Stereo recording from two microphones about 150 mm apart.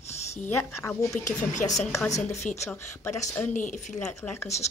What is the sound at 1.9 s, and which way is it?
Speech, 20° left (ahead or behind).